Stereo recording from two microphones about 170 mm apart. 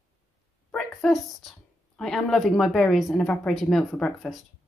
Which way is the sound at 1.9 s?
5° left (ahead or behind).